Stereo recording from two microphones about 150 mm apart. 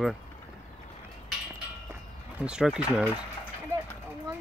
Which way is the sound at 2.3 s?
5° right (ahead or behind).